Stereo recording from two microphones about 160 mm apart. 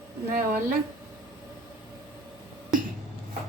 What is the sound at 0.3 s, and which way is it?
Speech, 60° right (ahead or behind).